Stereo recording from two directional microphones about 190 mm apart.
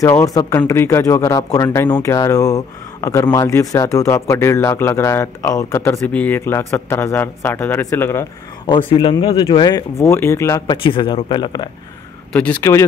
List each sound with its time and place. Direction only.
0.0 s speech: 15° left (ahead or behind)
8.6 s speech: 25° left (ahead or behind)
10.8 s speech: 25° left (ahead or behind)
12.3 s speech: 10° left (ahead or behind)